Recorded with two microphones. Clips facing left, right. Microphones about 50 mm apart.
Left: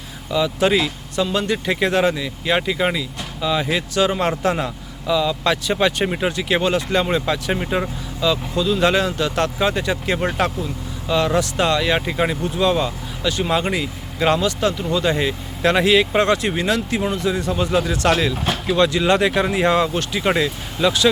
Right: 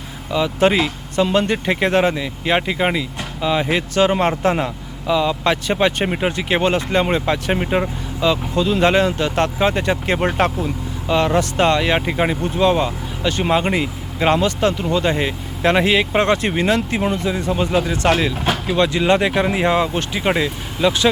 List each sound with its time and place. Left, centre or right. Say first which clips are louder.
0.3 s speech: right 2 dB; right
13.5 s speech: right 3 dB; right
15.1 s speech: even; right